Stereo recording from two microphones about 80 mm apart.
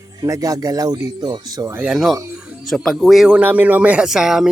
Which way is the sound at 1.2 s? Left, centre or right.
Right.